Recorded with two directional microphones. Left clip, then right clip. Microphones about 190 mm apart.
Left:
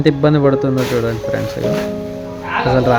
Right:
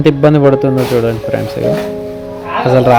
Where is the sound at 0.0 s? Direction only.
10° right (ahead or behind).